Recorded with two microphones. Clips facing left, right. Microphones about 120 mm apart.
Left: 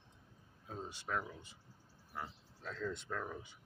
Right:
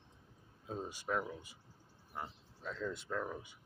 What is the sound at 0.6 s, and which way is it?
Speech, 15° right (ahead or behind).